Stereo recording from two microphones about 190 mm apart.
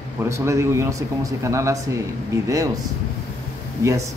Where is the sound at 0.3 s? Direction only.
15° right (ahead or behind).